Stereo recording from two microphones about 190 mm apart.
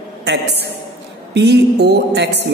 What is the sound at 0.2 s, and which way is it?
A woman's voice, 60° right (ahead or behind).